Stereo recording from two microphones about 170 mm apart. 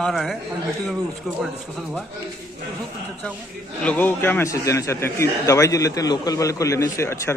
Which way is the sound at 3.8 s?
10° left (ahead or behind).